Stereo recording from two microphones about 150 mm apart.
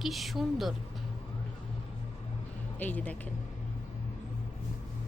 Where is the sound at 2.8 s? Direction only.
10° left (ahead or behind).